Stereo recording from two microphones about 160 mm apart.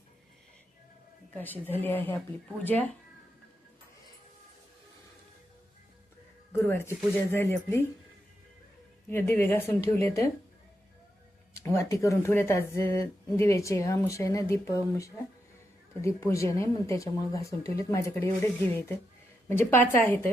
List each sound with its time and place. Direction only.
1.7 s speech: 10° left (ahead or behind)
6.6 s speech: 15° left (ahead or behind)
9.0 s speech: 15° left (ahead or behind)
11.5 s speech: 15° left (ahead or behind)